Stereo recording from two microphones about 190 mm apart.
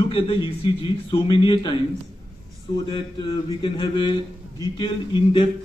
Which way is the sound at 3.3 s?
25° left (ahead or behind).